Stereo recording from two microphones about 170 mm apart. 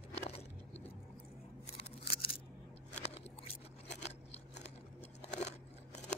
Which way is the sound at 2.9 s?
40° left (ahead or behind).